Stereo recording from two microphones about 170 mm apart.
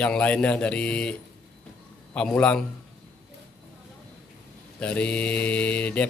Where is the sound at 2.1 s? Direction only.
5° left (ahead or behind).